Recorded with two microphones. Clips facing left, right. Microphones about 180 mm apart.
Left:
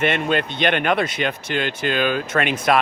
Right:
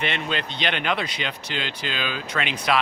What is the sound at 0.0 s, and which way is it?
Speech, 50° left (ahead or behind).